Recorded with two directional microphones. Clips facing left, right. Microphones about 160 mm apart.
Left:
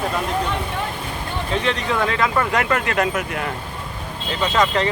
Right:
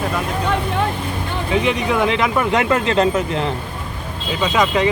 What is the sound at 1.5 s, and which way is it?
Speech, 15° right (ahead or behind).